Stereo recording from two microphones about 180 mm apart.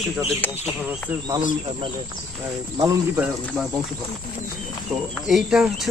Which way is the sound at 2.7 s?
20° right (ahead or behind).